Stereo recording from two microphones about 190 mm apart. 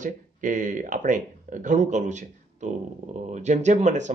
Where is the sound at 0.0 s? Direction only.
40° right (ahead or behind).